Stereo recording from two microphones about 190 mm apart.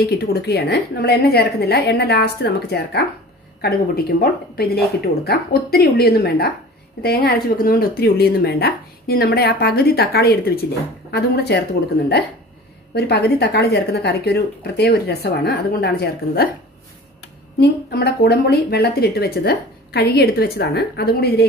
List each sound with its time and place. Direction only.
0.0 s speech: 55° left (ahead or behind)
17.6 s speech: 60° left (ahead or behind)